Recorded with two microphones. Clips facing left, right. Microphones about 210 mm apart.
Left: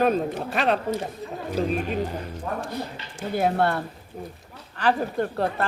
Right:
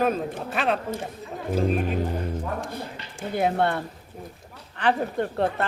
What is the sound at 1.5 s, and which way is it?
Speech, 50° right (ahead or behind).